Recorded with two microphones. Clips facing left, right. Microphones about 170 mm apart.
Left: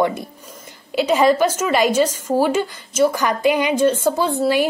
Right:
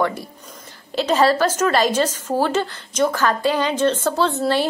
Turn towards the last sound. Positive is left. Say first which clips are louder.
# left 1 dB
turn(degrees=10)  # may be behind; listen again after turning